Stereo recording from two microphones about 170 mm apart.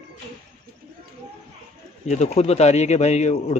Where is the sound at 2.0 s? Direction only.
40° left (ahead or behind).